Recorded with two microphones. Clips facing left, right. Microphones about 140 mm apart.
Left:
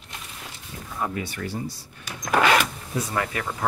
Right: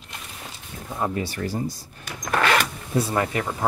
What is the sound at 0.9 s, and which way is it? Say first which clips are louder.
Speech: right 3 dB; 30° right (ahead or behind).